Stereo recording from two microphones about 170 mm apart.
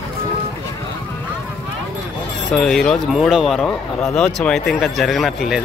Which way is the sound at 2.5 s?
Centre (ahead or behind).